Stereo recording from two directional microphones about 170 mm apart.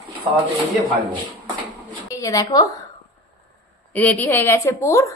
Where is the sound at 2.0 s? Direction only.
20° left (ahead or behind).